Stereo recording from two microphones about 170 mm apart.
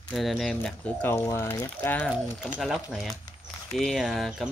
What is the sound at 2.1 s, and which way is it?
Speech, centre (ahead or behind).